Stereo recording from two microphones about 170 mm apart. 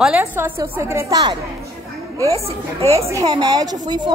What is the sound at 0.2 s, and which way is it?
Speech, 15° right (ahead or behind).